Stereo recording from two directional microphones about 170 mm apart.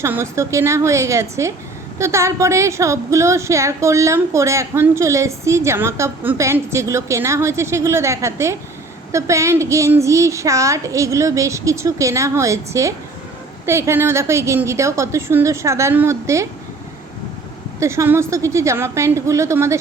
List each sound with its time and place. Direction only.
0.0 s a woman's voice: 15° right (ahead or behind)
17.7 s a woman's voice: 15° right (ahead or behind)